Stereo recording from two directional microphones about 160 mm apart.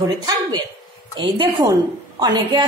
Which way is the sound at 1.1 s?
30° right (ahead or behind).